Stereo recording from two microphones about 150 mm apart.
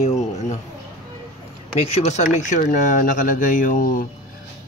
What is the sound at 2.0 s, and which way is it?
Speech, 50° left (ahead or behind).